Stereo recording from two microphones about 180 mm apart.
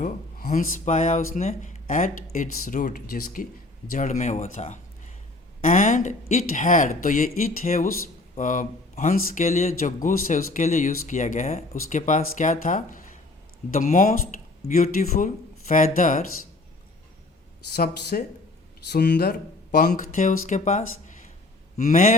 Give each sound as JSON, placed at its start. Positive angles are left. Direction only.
{"t": 0.0, "sound": "speech", "side_deg": 45}
{"t": 3.9, "sound": "speech", "side_deg": 45}
{"t": 18.1, "sound": "speech", "side_deg": 50}
{"t": 18.9, "sound": "speech", "side_deg": 70}